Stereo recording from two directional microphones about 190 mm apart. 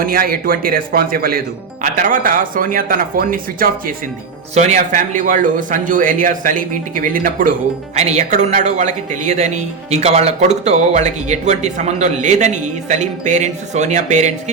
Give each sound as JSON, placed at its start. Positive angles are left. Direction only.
{"t": 0.0, "sound": "a man's voice", "side_deg": -50}
{"t": 4.5, "sound": "a man's voice", "side_deg": -35}
{"t": 7.9, "sound": "speech", "side_deg": -35}